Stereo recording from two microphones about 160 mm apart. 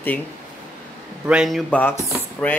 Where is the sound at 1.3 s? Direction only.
Centre (ahead or behind).